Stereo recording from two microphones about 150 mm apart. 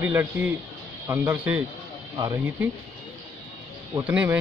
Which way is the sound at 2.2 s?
25° right (ahead or behind).